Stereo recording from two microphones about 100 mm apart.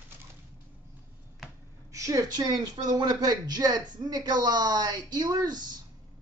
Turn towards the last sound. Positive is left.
turn(degrees=-45)  # may be behind; listen again after turning